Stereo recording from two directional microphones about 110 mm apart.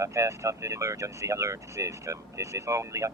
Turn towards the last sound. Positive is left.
turn(degrees=-25)  # may be behind; listen again after turning